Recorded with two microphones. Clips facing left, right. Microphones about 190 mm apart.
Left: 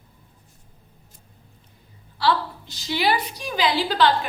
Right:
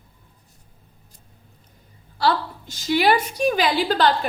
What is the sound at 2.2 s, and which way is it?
A woman's voice, 45° right (ahead or behind).